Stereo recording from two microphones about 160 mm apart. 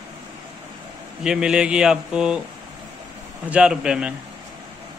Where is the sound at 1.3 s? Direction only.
5° right (ahead or behind).